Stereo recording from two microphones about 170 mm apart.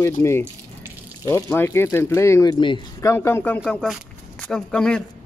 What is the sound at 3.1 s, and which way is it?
Speech, 15° left (ahead or behind).